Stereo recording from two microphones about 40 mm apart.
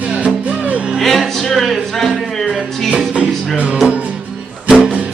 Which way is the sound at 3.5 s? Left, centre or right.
Right.